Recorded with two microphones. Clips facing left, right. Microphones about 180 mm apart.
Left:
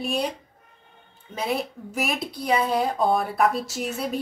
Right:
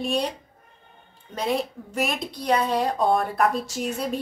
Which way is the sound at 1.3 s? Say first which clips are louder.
Right 2 dB; 5° left (ahead or behind).